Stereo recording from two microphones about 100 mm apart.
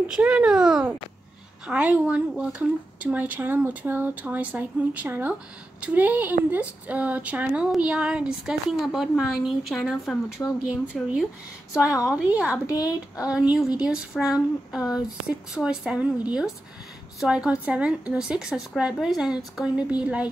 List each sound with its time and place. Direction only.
0.1 s a woman's voice: 10° right (ahead or behind)
10.4 s speech: 15° left (ahead or behind)
10.9 s speech: centre (ahead or behind)
12.1 s a woman's voice: 10° right (ahead or behind)
12.7 s speech: 35° left (ahead or behind)
13.3 s a woman's voice: 10° right (ahead or behind)
14.8 s speech: 40° left (ahead or behind)
15.5 s a woman's voice: 5° right (ahead or behind)